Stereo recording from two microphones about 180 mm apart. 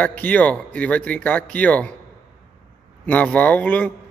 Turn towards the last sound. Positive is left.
turn(degrees=10)  # may be behind; listen again after turning